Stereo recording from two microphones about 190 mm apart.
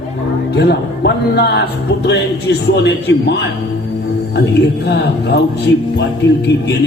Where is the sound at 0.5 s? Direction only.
65° left (ahead or behind).